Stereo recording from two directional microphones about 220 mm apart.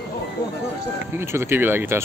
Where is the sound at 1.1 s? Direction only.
10° right (ahead or behind).